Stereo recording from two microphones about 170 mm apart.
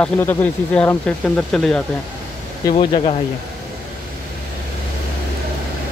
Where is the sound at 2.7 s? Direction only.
35° left (ahead or behind).